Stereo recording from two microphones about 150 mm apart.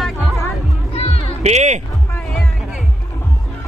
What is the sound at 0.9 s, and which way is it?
Music, 40° left (ahead or behind).